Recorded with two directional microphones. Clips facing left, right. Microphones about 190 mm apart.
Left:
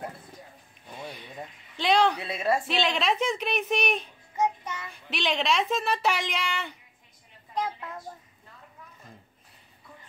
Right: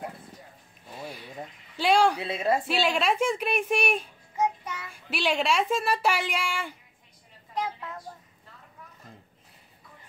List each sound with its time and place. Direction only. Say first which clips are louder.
0.9 s a sound: right 1 dB; 5° right (ahead or behind)
1.8 s speech: right 1 dB; 10° right (ahead or behind)
2.2 s a woman's voice: right 1 dB; 25° right (ahead or behind)
2.7 s a child's voice: right 1 dB; 5° right (ahead or behind)